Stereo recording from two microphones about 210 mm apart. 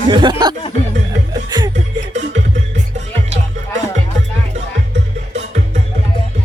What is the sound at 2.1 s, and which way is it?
Music, 35° right (ahead or behind).